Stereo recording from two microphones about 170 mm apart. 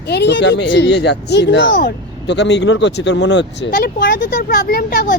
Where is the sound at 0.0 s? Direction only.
85° left.